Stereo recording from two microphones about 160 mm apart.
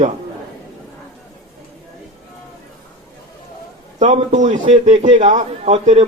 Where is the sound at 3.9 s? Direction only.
45° right (ahead or behind).